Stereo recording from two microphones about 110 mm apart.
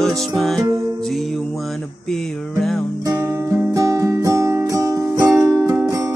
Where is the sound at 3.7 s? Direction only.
35° right (ahead or behind).